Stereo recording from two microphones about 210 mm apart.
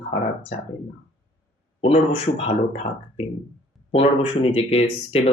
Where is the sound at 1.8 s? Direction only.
35° left (ahead or behind).